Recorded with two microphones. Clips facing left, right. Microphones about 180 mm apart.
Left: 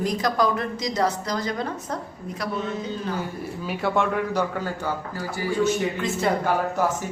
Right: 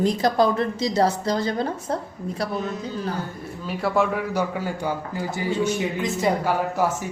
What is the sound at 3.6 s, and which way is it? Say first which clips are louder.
A man's voice: right 2 dB; centre (ahead or behind).